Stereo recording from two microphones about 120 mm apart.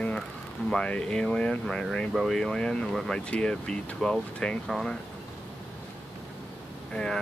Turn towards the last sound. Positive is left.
turn(degrees=5)  # may be behind; listen again after turning